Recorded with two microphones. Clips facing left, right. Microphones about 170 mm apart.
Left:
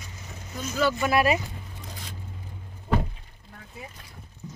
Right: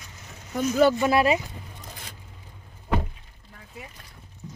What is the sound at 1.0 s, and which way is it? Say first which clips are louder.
Speech: right 2 dB; 25° right (ahead or behind).